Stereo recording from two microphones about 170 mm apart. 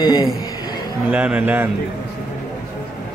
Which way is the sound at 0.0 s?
25° left (ahead or behind).